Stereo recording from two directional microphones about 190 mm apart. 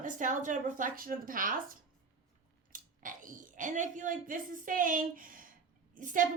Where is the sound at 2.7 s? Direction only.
45° right (ahead or behind).